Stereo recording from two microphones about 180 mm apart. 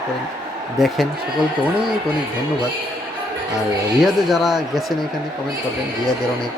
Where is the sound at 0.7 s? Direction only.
Centre (ahead or behind).